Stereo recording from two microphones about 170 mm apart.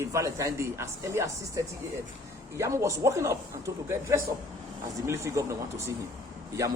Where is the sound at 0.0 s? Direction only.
15° right (ahead or behind).